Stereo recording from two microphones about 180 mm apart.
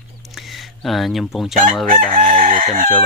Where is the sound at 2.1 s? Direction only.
45° right (ahead or behind).